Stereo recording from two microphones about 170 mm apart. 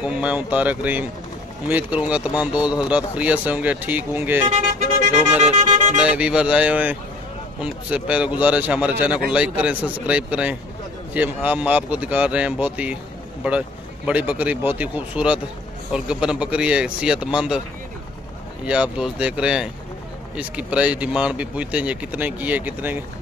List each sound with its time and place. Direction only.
0.0 s speech: 10° right (ahead or behind)
5.4 s music: 45° right (ahead or behind)
5.9 s a man's voice: 5° right (ahead or behind)
18.7 s a man's voice: 5° right (ahead or behind)